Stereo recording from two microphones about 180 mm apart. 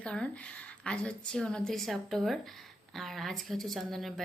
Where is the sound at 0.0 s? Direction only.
5° left (ahead or behind).